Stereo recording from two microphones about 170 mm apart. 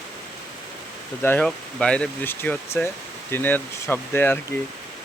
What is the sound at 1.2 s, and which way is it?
Speech, 10° left (ahead or behind).